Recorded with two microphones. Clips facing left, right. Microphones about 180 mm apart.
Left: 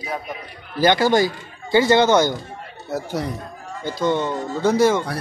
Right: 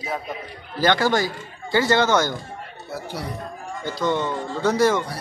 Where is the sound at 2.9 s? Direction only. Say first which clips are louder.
Left 7 dB; 45° left (ahead or behind).